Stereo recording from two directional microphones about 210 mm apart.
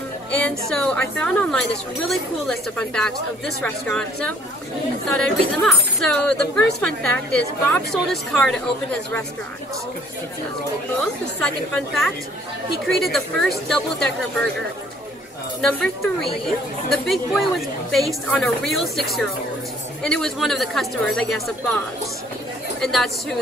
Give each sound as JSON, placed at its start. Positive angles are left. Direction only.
{"t": 0.3, "sound": "a woman's voice", "side_deg": 5}
{"t": 7.7, "sound": "a woman's voice", "side_deg": 5}
{"t": 11.0, "sound": "a woman's voice", "side_deg": 5}
{"t": 15.6, "sound": "a woman's voice", "side_deg": 5}